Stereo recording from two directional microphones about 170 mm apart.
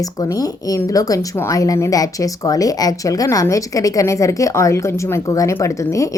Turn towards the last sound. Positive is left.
turn(degrees=20)  # may be behind; listen again after turning